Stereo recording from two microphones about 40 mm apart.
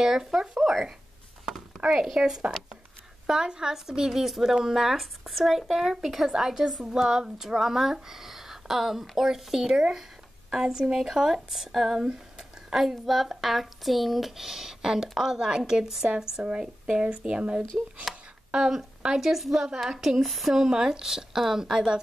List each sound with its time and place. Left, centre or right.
0.0 s speech: centre
1.8 s speech: right
12.0 s a sound: centre
12.7 s speech: centre
16.4 s speech: right
18.5 s speech: centre
20.5 s speech: centre